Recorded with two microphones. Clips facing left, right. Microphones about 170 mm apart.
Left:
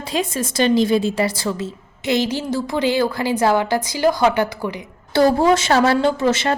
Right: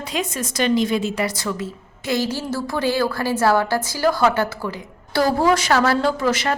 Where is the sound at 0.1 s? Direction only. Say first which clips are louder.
Left 4 dB; 30° left (ahead or behind).